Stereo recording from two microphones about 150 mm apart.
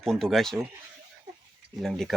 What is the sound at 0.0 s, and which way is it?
Speech, centre (ahead or behind).